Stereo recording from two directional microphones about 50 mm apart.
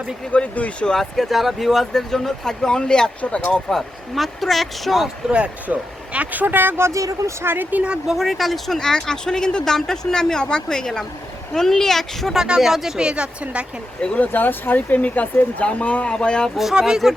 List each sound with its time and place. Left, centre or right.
0.3 s speech: left
0.9 s speech: centre
3.2 s speech: left
3.5 s speech: centre
5.3 s a woman's voice: right
6.1 s speech: right
6.8 s speech: right
7.4 s speech: right
8.0 s speech: centre
12.4 s speech: centre
13.0 s a woman's voice: centre
14.2 s speech: left; by 16.5 s centre
16.7 s speech: centre